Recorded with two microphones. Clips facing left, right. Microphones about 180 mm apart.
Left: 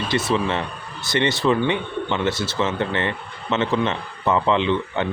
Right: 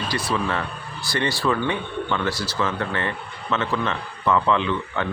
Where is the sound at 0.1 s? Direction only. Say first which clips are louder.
Left 4 dB; 25° left (ahead or behind).